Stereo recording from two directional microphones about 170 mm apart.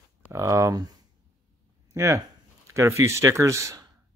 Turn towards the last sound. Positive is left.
turn(degrees=-20)  # may be behind; listen again after turning